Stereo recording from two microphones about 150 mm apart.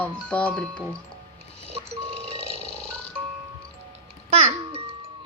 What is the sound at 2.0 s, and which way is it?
Music, 40° right (ahead or behind).